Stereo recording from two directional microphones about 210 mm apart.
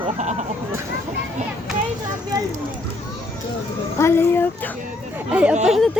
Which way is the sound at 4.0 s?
10° left (ahead or behind).